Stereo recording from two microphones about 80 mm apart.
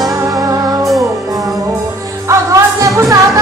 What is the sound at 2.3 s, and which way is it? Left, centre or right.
Music, right.